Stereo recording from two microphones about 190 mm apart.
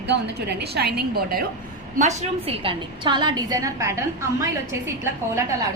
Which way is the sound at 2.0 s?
35° right (ahead or behind).